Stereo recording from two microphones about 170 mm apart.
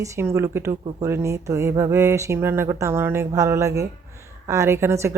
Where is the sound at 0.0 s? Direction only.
15° right (ahead or behind).